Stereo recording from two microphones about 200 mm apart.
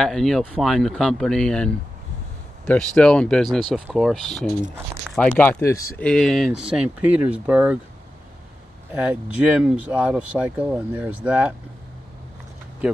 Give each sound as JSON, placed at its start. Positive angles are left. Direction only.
{"t": 0.0, "sound": "speech", "side_deg": 0}
{"t": 8.9, "sound": "speech", "side_deg": -10}